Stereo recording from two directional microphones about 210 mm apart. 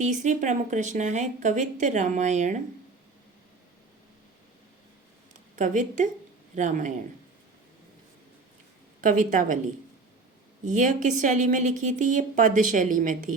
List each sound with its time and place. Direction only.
0.0 s a woman's voice: 35° right (ahead or behind)
5.5 s a woman's voice: 35° right (ahead or behind)
9.0 s a woman's voice: 40° right (ahead or behind)
10.7 s a woman's voice: 35° right (ahead or behind)